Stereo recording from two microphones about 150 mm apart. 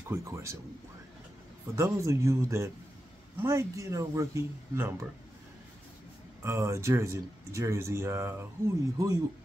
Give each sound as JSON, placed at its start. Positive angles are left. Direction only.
{"t": 0.1, "sound": "speech", "side_deg": -20}
{"t": 1.8, "sound": "speech", "side_deg": -20}
{"t": 6.4, "sound": "speech", "side_deg": -20}